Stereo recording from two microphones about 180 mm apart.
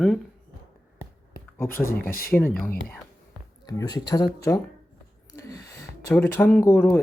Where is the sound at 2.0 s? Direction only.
55° left (ahead or behind).